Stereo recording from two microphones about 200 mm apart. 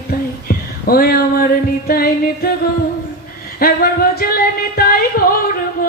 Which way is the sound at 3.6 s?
50° left (ahead or behind).